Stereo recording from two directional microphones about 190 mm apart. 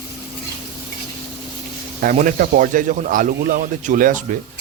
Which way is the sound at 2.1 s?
45° right (ahead or behind).